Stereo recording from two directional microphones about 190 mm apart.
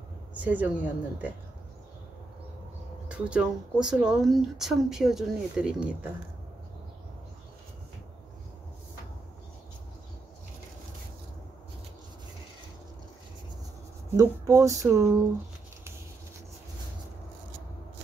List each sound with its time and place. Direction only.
0.3 s speech: 10° right (ahead or behind)
3.1 s speech: 5° right (ahead or behind)
14.1 s speech: 15° right (ahead or behind)